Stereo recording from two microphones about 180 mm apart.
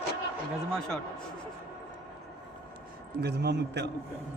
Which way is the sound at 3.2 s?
65° right (ahead or behind).